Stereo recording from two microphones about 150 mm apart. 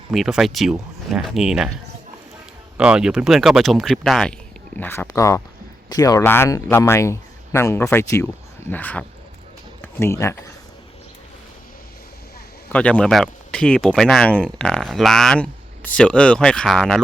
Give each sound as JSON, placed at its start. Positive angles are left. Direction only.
{"t": 0.1, "sound": "speech", "side_deg": 0}
{"t": 2.7, "sound": "speech", "side_deg": -5}
{"t": 4.8, "sound": "speech", "side_deg": 15}
{"t": 12.7, "sound": "speech", "side_deg": 10}